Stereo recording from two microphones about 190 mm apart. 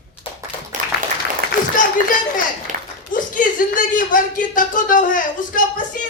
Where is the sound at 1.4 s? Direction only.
55° right (ahead or behind).